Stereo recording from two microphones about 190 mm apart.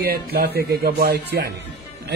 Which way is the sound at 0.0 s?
55° right (ahead or behind).